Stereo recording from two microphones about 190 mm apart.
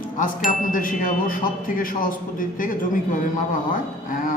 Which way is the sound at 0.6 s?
45° left (ahead or behind).